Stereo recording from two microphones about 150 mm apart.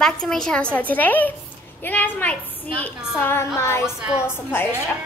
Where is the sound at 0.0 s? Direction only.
5° left (ahead or behind).